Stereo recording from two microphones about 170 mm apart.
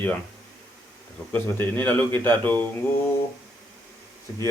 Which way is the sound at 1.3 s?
10° left (ahead or behind).